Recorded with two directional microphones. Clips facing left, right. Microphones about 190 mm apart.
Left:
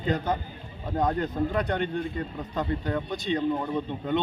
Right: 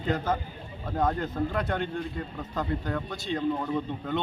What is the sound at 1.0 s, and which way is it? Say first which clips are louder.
A man's voice: left 1 dB; 20° left (ahead or behind).